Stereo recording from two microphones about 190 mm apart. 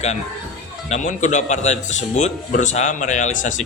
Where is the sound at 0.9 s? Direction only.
40° left (ahead or behind).